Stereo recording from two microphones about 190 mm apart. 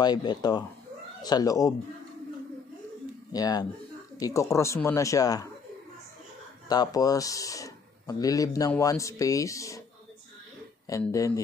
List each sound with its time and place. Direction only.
0.0 s speech: 20° left (ahead or behind)
3.3 s speech: 20° left (ahead or behind)
6.7 s speech: 20° left (ahead or behind)
10.9 s speech: 15° left (ahead or behind)